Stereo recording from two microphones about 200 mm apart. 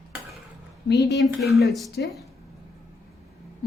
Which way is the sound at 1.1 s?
Centre (ahead or behind).